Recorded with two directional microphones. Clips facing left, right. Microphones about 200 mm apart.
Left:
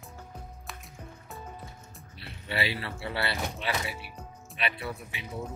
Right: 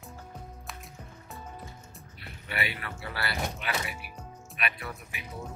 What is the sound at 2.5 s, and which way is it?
Speech, 30° left (ahead or behind).